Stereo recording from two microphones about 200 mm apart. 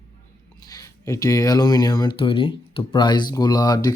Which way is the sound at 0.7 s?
15° left (ahead or behind).